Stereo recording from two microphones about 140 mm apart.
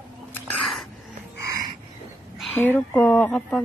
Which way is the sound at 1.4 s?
25° right (ahead or behind).